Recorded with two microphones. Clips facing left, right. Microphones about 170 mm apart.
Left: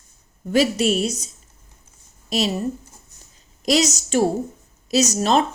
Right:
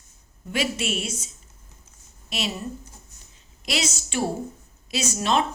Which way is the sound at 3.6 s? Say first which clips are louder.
Left 9 dB; 40° left (ahead or behind).